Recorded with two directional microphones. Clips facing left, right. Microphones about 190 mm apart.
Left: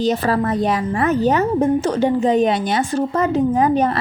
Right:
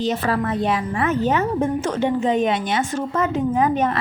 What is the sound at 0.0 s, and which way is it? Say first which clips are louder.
A woman's voice: left 4 dB; 40° left (ahead or behind).